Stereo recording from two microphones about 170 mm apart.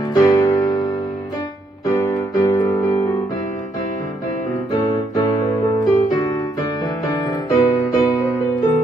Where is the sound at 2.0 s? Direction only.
20° left (ahead or behind).